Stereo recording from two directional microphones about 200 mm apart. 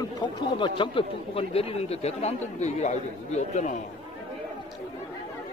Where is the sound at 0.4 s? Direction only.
25° left (ahead or behind).